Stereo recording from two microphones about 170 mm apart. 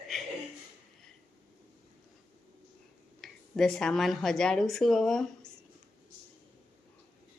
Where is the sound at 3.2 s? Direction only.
5° left (ahead or behind).